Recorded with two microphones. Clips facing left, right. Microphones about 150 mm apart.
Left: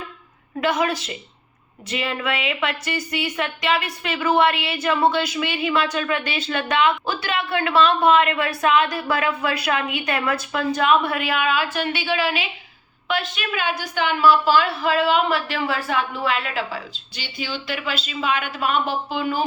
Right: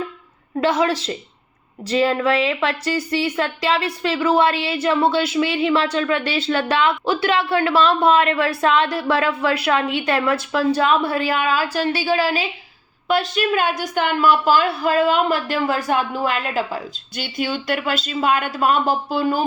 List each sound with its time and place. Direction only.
0.6 s a woman's voice: 30° right (ahead or behind)